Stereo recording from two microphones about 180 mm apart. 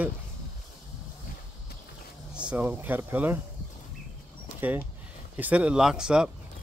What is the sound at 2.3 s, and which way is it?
Speech, 5° right (ahead or behind).